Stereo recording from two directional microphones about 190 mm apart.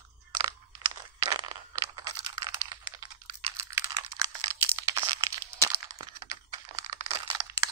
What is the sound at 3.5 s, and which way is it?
Computer keyboard, 15° right (ahead or behind).